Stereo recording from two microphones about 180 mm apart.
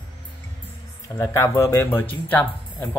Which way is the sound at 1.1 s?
15° left (ahead or behind).